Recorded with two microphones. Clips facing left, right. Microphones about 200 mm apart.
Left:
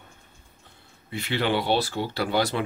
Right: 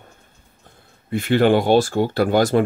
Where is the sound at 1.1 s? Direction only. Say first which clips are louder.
Right 10 dB; 50° right (ahead or behind).